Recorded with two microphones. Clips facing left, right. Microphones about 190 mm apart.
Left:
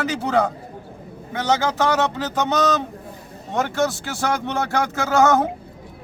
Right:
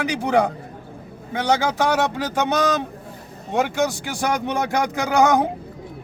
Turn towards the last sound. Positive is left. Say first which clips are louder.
# even
turn(degrees=-15)  # may be behind; listen again after turning